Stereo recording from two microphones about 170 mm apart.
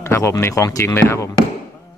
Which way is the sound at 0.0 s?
15° left (ahead or behind).